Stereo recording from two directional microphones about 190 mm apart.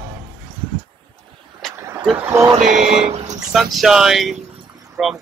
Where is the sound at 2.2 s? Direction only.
15° right (ahead or behind).